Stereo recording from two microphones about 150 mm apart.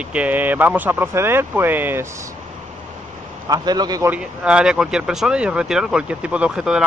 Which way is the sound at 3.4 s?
25° right (ahead or behind).